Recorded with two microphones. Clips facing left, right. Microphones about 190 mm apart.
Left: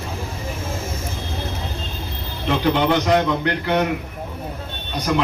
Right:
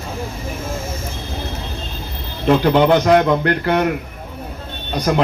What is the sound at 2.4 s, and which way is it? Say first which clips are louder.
A man's voice: right 6 dB; 50° right (ahead or behind).